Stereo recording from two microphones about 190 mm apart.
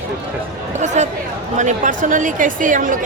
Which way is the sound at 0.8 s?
40° right (ahead or behind).